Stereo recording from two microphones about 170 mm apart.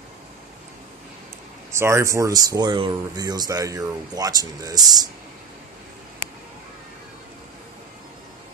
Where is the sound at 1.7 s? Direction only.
15° right (ahead or behind).